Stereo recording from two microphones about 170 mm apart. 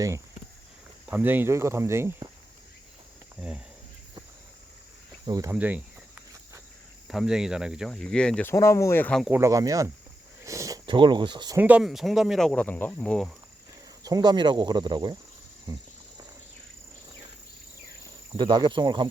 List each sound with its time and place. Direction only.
1.0 s speech: 10° right (ahead or behind)
5.2 s speech: 20° right (ahead or behind)
5.5 s cricket: 10° right (ahead or behind)
7.1 s speech: centre (ahead or behind)
9.2 s speech: 15° right (ahead or behind)
10.4 s a sound: 20° right (ahead or behind)
10.8 s speech: 30° right (ahead or behind)
11.5 s speech: 10° right (ahead or behind)
14.0 s speech: 25° right (ahead or behind)
18.3 s speech: 25° right (ahead or behind)